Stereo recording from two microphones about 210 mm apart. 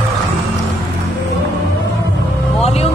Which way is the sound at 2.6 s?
30° left (ahead or behind).